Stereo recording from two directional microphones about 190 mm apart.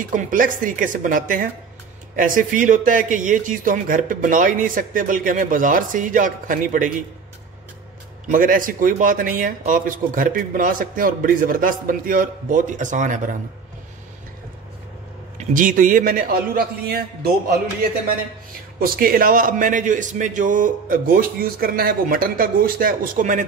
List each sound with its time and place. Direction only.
0.0 s a man's voice: 45° right (ahead or behind)
8.3 s a man's voice: 45° right (ahead or behind)
15.3 s a man's voice: 45° right (ahead or behind)
18.9 s a man's voice: 50° right (ahead or behind)